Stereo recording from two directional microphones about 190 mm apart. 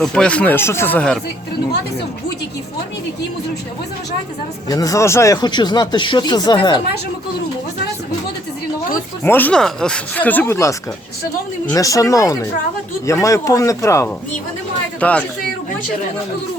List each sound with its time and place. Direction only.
0.0 s speech: 5° left (ahead or behind)
4.7 s speech: 20° left (ahead or behind)
9.2 s speech: 10° left (ahead or behind)